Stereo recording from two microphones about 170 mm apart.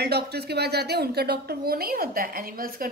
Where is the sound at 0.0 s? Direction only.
70° right (ahead or behind).